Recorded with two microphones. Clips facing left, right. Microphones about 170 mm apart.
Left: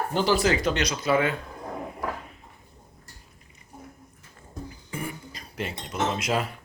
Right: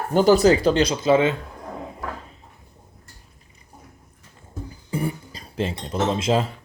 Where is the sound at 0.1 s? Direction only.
45° right (ahead or behind); by 1.4 s 25° right (ahead or behind).